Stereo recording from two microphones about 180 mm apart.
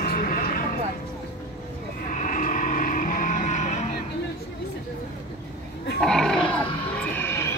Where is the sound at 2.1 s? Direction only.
45° left (ahead or behind).